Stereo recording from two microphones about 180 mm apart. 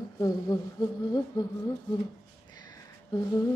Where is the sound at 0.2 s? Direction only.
20° left (ahead or behind).